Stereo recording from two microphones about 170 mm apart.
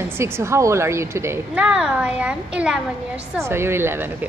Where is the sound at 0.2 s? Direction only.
15° right (ahead or behind).